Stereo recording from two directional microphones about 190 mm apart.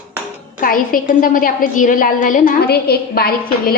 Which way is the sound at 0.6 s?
45° left (ahead or behind).